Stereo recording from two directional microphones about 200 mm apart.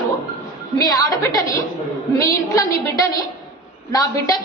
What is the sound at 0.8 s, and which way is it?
A woman's voice, 15° left (ahead or behind).